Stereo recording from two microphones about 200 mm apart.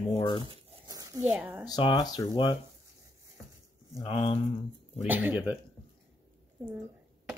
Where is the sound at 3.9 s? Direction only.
25° left (ahead or behind).